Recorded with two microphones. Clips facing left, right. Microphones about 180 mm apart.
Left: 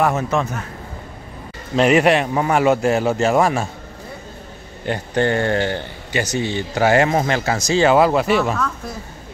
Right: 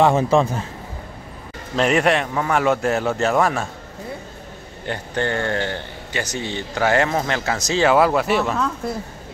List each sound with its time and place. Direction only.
0.0 s a man's voice: 30° right (ahead or behind)
1.8 s speech: 5° left (ahead or behind)
4.8 s speech: 15° left (ahead or behind)